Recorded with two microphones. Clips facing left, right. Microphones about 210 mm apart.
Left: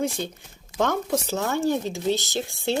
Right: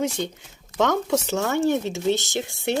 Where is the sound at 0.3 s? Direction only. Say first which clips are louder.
Right 2 dB; 80° right.